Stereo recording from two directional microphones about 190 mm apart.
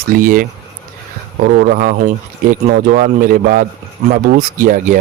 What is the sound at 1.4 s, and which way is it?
Speech, 50° right (ahead or behind).